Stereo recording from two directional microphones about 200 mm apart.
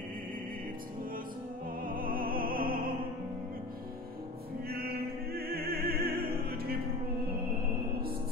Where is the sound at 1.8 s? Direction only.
45° right (ahead or behind).